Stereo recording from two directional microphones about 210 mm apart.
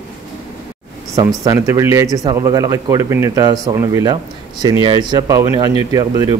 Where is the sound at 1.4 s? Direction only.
15° right (ahead or behind).